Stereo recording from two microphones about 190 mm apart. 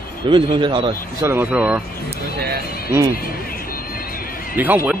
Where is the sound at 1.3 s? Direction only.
10° right (ahead or behind).